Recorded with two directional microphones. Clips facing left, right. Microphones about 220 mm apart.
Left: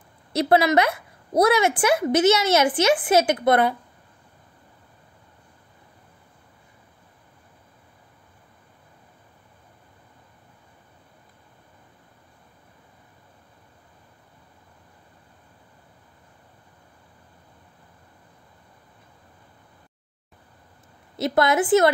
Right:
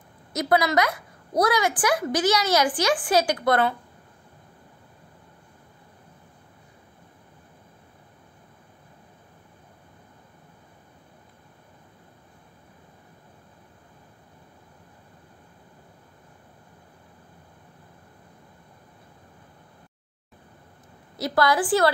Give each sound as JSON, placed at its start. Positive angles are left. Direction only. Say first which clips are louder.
{"t": 0.3, "sound": "a woman's voice", "louder": "left 4 dB", "side_deg": 30}
{"t": 21.2, "sound": "a woman's voice", "louder": "left 2 dB", "side_deg": 25}